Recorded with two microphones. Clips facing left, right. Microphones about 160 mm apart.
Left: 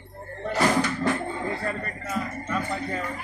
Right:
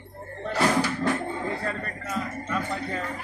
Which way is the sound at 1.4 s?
5° left (ahead or behind).